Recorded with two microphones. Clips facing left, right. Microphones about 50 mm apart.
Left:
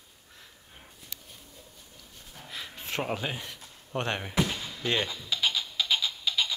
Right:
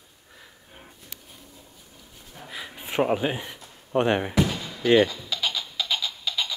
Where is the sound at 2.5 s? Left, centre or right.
Centre.